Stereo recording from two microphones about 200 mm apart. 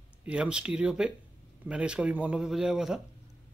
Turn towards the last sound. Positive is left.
turn(degrees=-5)  # may be behind; listen again after turning